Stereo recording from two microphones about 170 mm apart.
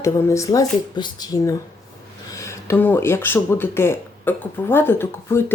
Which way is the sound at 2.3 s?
15° left (ahead or behind).